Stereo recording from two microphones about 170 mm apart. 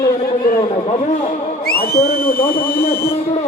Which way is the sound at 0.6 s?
40° left (ahead or behind).